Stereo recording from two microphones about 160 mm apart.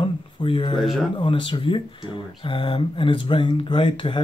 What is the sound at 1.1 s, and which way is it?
Speech, 30° left (ahead or behind).